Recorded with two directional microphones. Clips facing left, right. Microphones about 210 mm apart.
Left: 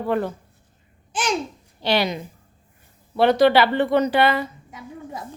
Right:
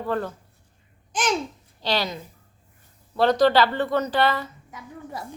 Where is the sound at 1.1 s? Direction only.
10° left (ahead or behind).